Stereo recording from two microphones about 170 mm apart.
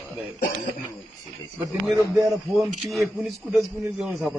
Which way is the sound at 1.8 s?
Centre (ahead or behind).